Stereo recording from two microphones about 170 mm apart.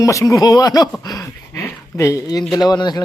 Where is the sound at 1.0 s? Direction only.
20° left (ahead or behind).